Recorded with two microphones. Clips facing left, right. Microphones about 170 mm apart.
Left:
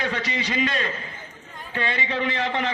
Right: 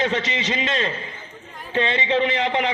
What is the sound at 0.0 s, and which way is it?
A man's voice, 25° right (ahead or behind).